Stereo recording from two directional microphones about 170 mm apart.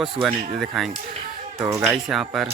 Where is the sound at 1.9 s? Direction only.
Centre (ahead or behind).